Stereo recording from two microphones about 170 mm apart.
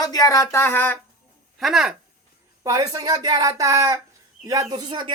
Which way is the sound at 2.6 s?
20° right (ahead or behind).